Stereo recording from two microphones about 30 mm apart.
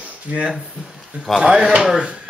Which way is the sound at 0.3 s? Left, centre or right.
Right.